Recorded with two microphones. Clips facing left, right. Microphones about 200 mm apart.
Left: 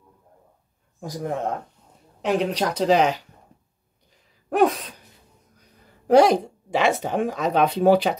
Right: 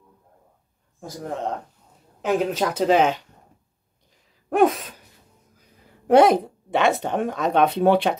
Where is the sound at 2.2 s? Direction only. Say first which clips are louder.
Right 1 dB; 5° right (ahead or behind).